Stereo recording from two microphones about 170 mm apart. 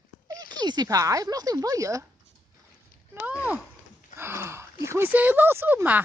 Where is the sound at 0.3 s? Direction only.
25° right (ahead or behind).